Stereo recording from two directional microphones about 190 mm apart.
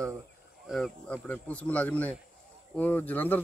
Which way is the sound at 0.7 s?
5° left (ahead or behind).